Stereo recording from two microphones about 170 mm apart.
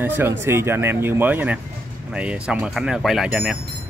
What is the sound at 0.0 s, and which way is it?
Speech, 10° right (ahead or behind).